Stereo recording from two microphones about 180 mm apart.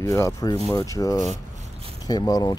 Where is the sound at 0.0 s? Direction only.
15° left (ahead or behind).